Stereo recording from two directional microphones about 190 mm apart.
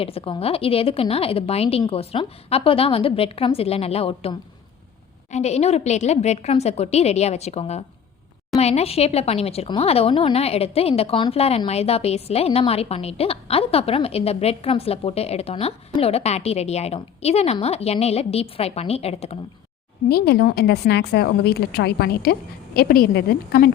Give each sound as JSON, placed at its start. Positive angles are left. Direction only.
{"t": 0.0, "sound": "speech", "side_deg": 30}
{"t": 20.1, "sound": "a woman's voice", "side_deg": 55}